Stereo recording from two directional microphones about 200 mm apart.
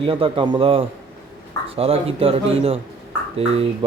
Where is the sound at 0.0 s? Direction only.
25° right (ahead or behind).